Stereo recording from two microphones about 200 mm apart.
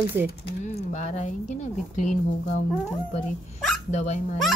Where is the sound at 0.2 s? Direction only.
10° right (ahead or behind).